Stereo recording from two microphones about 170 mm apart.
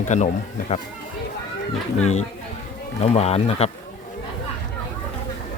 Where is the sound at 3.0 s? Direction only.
40° left (ahead or behind).